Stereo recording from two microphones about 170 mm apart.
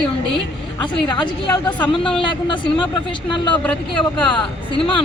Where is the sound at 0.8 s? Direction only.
30° left (ahead or behind).